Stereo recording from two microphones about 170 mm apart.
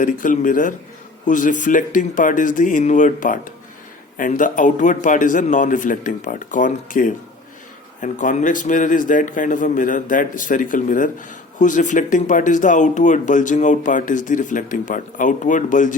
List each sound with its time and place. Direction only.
0.0 s speech: 50° left (ahead or behind)